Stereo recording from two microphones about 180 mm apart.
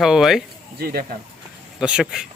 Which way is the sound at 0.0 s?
Centre (ahead or behind).